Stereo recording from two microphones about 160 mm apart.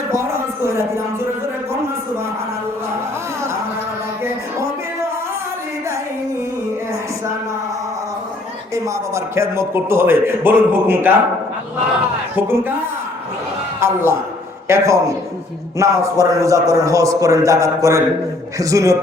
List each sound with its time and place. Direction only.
0.1 s a sound: 15° right (ahead or behind)
8.7 s a man's voice: 20° right (ahead or behind)
12.4 s a man's voice: 15° right (ahead or behind)
13.7 s a man's voice: 15° right (ahead or behind)